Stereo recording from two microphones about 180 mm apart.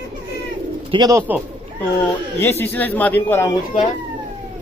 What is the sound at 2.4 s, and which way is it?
Speech, 10° left (ahead or behind).